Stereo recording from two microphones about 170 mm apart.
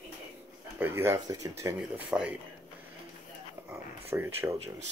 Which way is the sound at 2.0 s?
5° right (ahead or behind).